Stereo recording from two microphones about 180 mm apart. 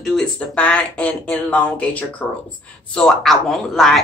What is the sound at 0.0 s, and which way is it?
A woman's voice, centre (ahead or behind).